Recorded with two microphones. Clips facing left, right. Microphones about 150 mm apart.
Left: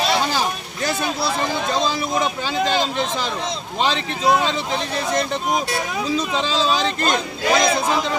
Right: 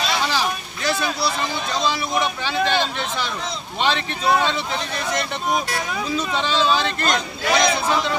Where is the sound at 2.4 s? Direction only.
40° left (ahead or behind).